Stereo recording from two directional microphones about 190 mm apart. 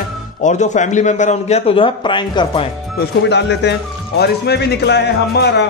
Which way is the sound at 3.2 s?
65° left (ahead or behind).